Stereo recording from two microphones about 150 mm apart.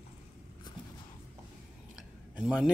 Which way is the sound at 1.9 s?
5° right (ahead or behind).